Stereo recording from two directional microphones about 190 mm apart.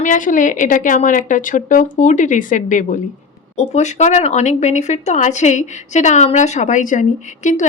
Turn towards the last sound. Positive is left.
turn(degrees=40)  # may be behind; listen again after turning